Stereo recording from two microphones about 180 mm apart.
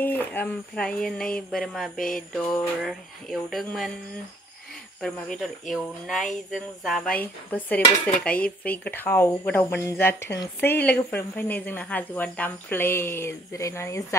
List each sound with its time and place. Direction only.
0.0 s speech: 10° left (ahead or behind)
5.0 s a woman's voice: 5° left (ahead or behind)